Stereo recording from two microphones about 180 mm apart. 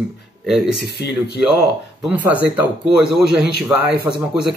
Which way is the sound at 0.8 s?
65° left (ahead or behind).